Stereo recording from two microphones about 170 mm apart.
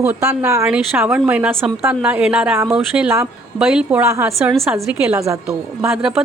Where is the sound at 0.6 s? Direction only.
5° right (ahead or behind).